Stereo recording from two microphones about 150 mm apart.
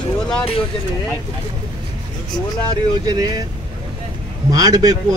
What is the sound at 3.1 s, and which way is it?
Speech, 25° right (ahead or behind).